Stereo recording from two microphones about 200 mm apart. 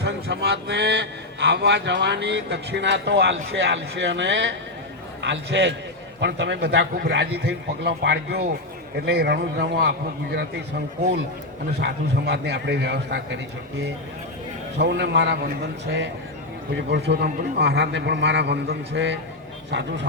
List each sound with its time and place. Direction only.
0.0 s a man's voice: 60° right (ahead or behind)
11.8 s a man's voice: 60° right (ahead or behind)
14.8 s a man's voice: 60° right (ahead or behind)